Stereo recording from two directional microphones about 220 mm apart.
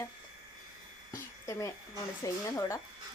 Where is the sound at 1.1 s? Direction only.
15° left (ahead or behind).